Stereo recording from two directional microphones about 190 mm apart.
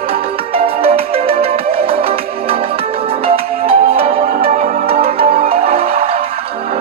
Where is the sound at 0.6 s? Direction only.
30° right (ahead or behind).